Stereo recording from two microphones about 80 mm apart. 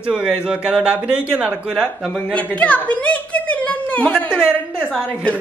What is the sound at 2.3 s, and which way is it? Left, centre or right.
A woman's voice, centre.